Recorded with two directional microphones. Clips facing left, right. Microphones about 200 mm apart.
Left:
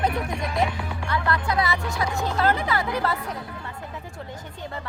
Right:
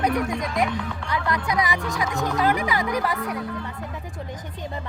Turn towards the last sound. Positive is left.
turn(degrees=-15)  # may be behind; listen again after turning